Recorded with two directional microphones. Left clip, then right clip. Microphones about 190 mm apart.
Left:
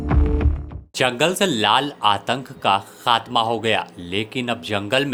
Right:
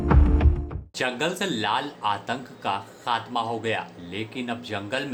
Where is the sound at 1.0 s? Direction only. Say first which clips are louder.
Left 8 dB; 40° left (ahead or behind).